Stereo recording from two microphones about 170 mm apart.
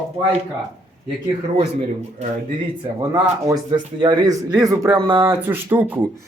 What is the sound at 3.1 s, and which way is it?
A man's voice, 20° right (ahead or behind).